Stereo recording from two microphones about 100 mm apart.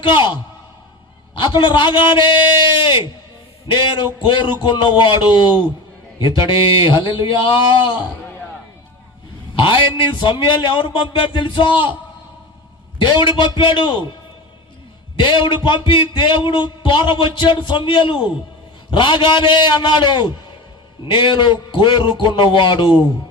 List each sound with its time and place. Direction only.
0.0 s speech: 55° left (ahead or behind)
1.4 s a man's voice: 50° left (ahead or behind)
9.6 s speech: 55° left (ahead or behind)
13.0 s a man's voice: 50° left (ahead or behind)
15.2 s a man's voice: 55° left (ahead or behind)